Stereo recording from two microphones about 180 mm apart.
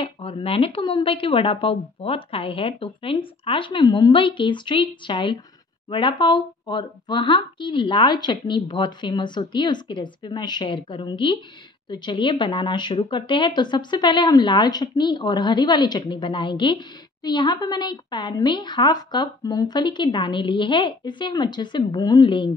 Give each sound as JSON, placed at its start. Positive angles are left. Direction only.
{"t": 0.0, "sound": "speech", "side_deg": 30}